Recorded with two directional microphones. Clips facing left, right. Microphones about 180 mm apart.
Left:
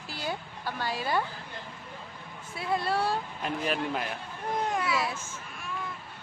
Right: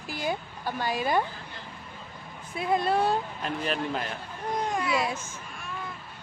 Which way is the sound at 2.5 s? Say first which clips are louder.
Right 4 dB; 20° right (ahead or behind).